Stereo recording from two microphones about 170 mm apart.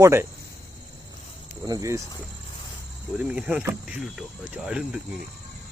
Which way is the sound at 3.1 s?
5° right (ahead or behind).